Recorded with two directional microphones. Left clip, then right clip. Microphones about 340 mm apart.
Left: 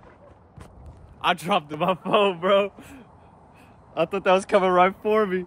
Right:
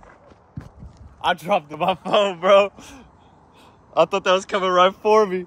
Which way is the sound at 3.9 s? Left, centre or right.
Centre.